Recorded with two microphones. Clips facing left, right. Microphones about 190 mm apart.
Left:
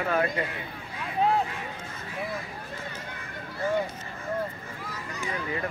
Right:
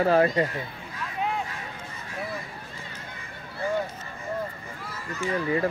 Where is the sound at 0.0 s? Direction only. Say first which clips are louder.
Right 6 dB; 35° right (ahead or behind).